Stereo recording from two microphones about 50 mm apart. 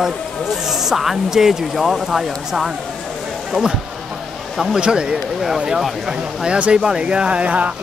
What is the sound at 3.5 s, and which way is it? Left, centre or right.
Speech, centre.